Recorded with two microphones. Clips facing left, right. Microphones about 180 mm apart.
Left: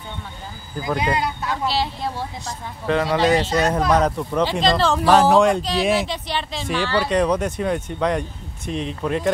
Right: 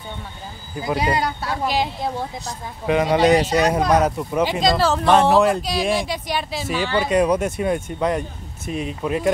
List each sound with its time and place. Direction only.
1.0 s speech: 35° right (ahead or behind)
1.5 s a woman's voice: 15° right (ahead or behind)